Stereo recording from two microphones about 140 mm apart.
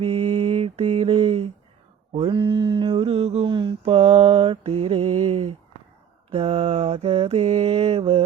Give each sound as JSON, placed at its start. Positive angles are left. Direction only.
{"t": 0.0, "sound": "mantra", "side_deg": -50}
{"t": 3.5, "sound": "mantra", "side_deg": -35}